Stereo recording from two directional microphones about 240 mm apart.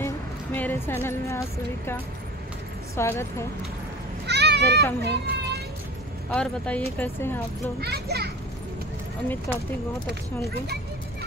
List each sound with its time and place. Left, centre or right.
0.6 s music: centre
3.0 s speech: centre
4.3 s children playing: right
5.0 s speech: right
6.3 s speech: centre
7.8 s a child's voice: right
9.5 s speech: centre